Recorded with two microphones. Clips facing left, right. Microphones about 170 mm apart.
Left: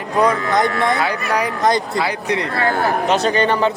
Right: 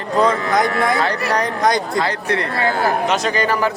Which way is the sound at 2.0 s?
15° left (ahead or behind).